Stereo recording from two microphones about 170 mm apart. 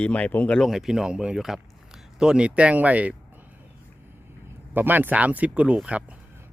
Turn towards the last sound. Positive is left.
turn(degrees=-5)  # may be behind; listen again after turning